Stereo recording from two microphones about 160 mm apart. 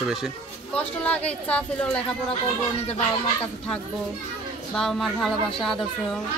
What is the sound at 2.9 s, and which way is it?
Speech, 40° left (ahead or behind).